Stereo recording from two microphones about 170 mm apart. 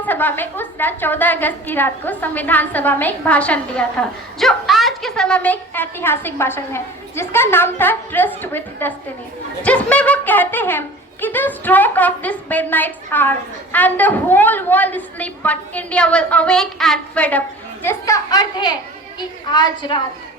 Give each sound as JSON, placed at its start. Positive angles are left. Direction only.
{"t": 0.0, "sound": "a woman's voice", "side_deg": 10}
{"t": 17.8, "sound": "a woman's voice", "side_deg": 20}